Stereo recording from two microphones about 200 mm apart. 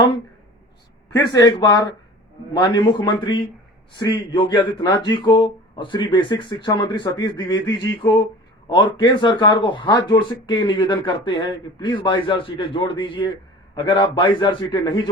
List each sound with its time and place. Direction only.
1.1 s speech: 20° left (ahead or behind)